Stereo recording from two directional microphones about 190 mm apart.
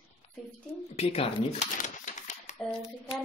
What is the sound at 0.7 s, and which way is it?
Typewriter, 30° left (ahead or behind).